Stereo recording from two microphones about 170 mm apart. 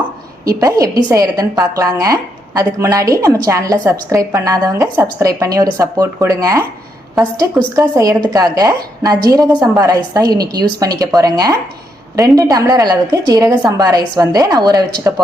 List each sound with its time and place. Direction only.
1.0 s a woman's voice: 20° right (ahead or behind)